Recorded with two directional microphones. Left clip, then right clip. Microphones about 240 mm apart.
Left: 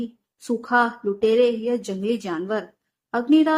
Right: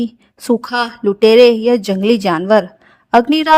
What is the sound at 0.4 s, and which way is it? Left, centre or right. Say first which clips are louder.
Speech: right 4 dB; right.